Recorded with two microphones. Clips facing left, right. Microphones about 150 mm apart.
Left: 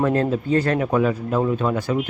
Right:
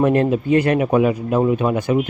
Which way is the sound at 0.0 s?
20° right (ahead or behind).